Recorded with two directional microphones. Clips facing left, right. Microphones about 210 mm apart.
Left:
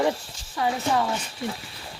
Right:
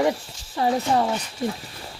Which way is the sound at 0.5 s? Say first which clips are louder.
Right 3 dB; 35° right (ahead or behind).